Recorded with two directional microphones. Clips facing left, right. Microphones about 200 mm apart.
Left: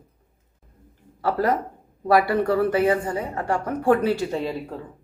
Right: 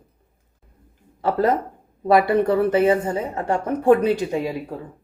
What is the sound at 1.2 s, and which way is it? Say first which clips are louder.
A woman's voice: right 3 dB; 20° right (ahead or behind).